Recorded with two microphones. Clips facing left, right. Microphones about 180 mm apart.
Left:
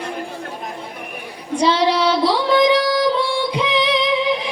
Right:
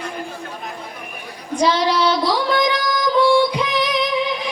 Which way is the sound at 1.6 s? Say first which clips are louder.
Left 1 dB; 30° left (ahead or behind).